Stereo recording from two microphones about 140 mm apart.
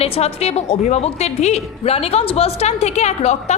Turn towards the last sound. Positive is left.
turn(degrees=55)  # may be behind; listen again after turning